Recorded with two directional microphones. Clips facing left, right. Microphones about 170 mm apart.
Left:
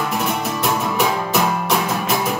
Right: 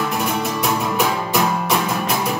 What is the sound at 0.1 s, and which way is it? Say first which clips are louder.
Music: even; centre (ahead or behind).